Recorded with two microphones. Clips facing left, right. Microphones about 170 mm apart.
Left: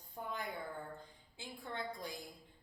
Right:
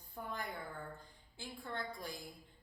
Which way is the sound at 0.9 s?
20° left (ahead or behind).